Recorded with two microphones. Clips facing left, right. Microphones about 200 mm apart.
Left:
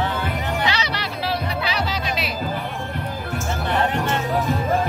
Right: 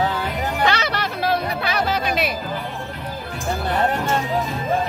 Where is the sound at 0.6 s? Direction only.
50° right (ahead or behind).